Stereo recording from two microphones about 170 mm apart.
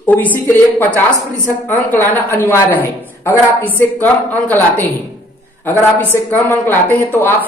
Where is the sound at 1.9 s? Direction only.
10° left (ahead or behind).